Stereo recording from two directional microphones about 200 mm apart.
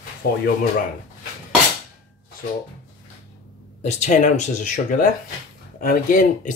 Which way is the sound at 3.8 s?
35° left (ahead or behind).